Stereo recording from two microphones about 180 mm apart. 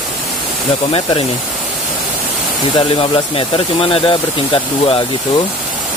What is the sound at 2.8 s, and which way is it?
Speech, 30° left (ahead or behind).